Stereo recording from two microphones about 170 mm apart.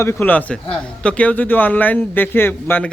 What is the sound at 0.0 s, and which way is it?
A man's voice, 15° left (ahead or behind).